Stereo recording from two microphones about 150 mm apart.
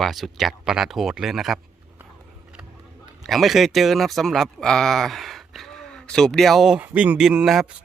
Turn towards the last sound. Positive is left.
turn(degrees=0)  # may be behind; listen again after turning